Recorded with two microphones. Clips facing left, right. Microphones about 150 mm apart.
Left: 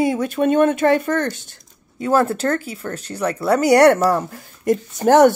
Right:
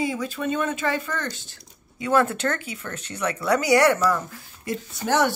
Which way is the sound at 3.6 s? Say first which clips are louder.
Left 7 dB; 55° left (ahead or behind).